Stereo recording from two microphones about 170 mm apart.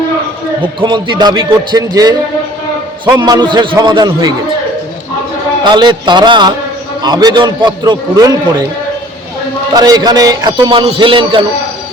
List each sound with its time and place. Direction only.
0.8 s a man's voice: 25° right (ahead or behind)
3.2 s a man's voice: 25° right (ahead or behind)
5.6 s a man's voice: 25° right (ahead or behind)
9.7 s a man's voice: 25° right (ahead or behind)